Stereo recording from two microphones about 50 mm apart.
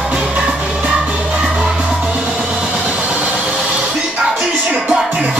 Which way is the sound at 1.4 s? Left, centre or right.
Centre.